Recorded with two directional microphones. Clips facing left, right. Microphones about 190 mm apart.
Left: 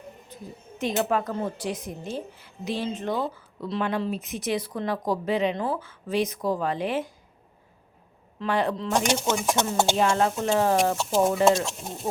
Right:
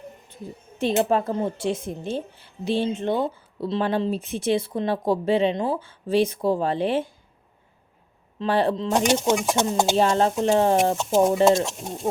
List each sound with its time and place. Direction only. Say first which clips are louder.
0.3 s a sound: right 3 dB; 30° right (ahead or behind)
0.8 s speech: right 4 dB; 30° right (ahead or behind)
8.4 s speech: right 4 dB; 30° right (ahead or behind)